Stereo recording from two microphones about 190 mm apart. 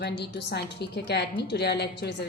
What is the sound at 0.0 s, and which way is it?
A woman's voice, 60° left (ahead or behind).